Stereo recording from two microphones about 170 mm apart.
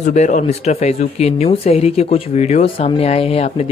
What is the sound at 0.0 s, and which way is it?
Speech, 45° left (ahead or behind).